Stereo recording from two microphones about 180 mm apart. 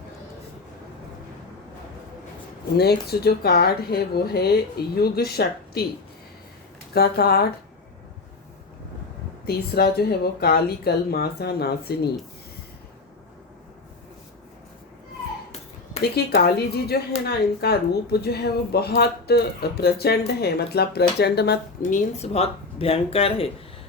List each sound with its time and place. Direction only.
2.7 s speech: 60° left (ahead or behind)
6.9 s speech: 60° left (ahead or behind)
9.7 s speech: 60° left (ahead or behind)
16.4 s speech: 60° left (ahead or behind)
21.8 s speech: 45° left (ahead or behind)